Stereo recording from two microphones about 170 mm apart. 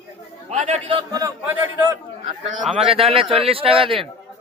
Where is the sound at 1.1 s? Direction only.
20° right (ahead or behind).